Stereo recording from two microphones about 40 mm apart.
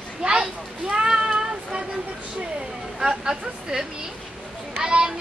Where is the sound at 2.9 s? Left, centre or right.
Centre.